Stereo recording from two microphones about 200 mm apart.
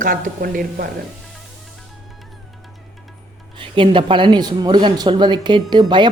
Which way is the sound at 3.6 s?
25° right (ahead or behind).